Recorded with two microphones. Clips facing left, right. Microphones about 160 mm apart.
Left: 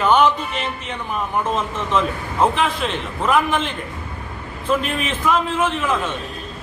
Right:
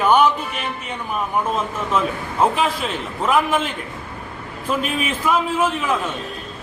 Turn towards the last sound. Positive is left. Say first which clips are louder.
# even
turn(degrees=-10)  # may be behind; listen again after turning